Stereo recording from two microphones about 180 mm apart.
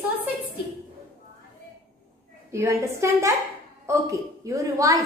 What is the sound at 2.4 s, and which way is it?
A woman's voice, 15° right (ahead or behind).